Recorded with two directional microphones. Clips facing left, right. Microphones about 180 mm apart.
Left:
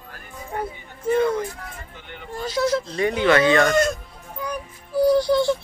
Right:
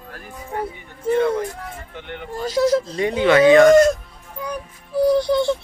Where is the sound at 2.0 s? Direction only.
65° right (ahead or behind).